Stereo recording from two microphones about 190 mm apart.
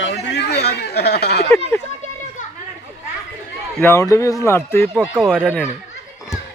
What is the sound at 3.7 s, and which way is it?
Speech, 15° left (ahead or behind).